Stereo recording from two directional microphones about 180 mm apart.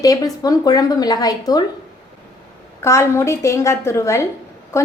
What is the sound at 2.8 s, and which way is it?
A woman's voice, 15° left (ahead or behind).